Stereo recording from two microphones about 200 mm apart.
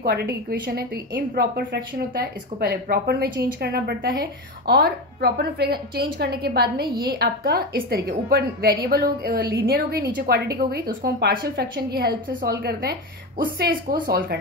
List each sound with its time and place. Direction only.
0.0 s a woman's voice: 55° right (ahead or behind)